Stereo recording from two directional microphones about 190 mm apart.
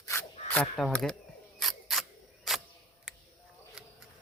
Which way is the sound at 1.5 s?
Centre (ahead or behind).